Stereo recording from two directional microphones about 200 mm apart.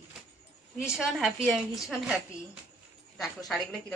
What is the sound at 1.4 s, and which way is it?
A woman's voice, centre (ahead or behind).